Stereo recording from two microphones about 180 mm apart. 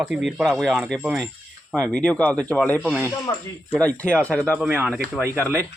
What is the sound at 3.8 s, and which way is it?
Speech, 5° left (ahead or behind).